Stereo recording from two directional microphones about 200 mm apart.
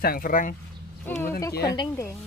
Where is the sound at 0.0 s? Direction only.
45° left (ahead or behind).